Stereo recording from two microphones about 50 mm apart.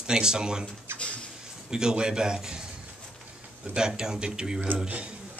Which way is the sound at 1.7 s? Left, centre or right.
Centre.